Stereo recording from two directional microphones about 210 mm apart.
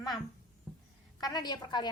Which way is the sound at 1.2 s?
20° left (ahead or behind).